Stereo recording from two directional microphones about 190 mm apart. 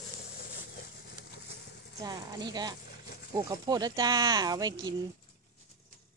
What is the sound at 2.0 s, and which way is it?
Speech, 20° right (ahead or behind).